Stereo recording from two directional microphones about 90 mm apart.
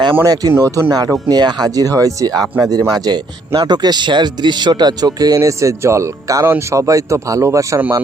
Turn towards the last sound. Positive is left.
turn(degrees=-35)  # may be behind; listen again after turning